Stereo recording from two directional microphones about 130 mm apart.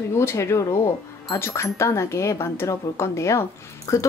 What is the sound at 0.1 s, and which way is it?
Speech, 20° left (ahead or behind).